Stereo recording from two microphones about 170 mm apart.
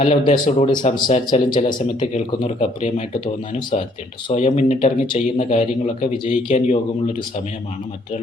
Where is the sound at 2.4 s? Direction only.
40° left (ahead or behind).